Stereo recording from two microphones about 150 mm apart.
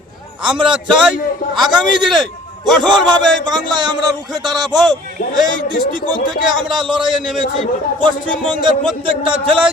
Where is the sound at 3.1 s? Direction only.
30° right (ahead or behind).